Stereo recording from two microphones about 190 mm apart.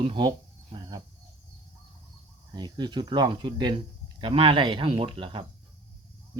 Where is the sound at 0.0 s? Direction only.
25° right (ahead or behind).